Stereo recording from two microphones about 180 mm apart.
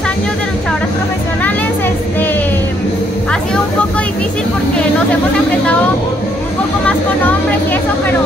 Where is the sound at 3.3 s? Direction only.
5° left (ahead or behind).